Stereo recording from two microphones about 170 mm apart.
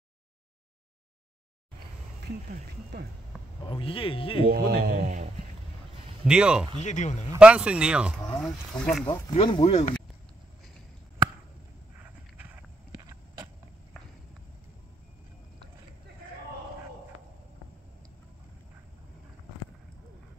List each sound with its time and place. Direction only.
2.5 s speech: 70° right (ahead or behind)
3.6 s speech: 30° left (ahead or behind)
4.5 s speech: 70° right (ahead or behind)
6.2 s speech: 5° right (ahead or behind)
6.8 s speech: 45° left (ahead or behind)
7.3 s speech: 5° right (ahead or behind)
9.3 s speech: 35° left (ahead or behind)